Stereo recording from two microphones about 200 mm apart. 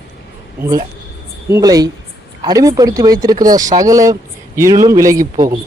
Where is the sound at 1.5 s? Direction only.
15° right (ahead or behind).